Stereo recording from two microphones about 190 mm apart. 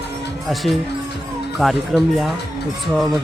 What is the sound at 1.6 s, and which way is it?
Speech, centre (ahead or behind).